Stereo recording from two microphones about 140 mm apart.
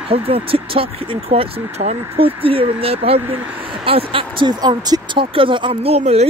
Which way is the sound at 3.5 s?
40° right (ahead or behind).